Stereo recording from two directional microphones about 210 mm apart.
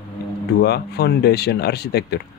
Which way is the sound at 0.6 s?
50° left (ahead or behind).